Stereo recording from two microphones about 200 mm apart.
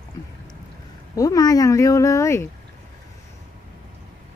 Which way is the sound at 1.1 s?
15° left (ahead or behind).